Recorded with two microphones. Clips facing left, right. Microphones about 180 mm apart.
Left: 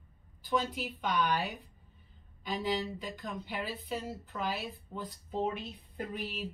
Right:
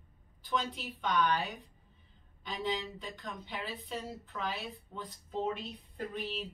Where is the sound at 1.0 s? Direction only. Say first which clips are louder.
Right 1 dB; centre (ahead or behind).